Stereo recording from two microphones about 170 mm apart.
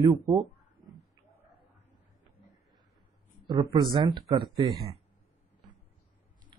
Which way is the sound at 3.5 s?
25° right (ahead or behind).